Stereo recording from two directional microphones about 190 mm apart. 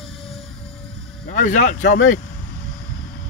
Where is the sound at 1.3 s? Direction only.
45° left (ahead or behind).